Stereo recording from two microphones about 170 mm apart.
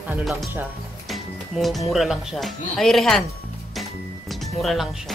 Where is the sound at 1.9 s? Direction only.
Centre (ahead or behind).